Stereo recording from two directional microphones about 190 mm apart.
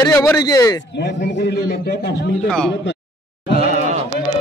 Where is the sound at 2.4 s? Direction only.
5° left (ahead or behind).